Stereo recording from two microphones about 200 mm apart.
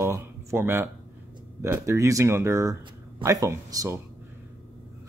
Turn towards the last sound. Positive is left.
turn(degrees=-15)  # may be behind; listen again after turning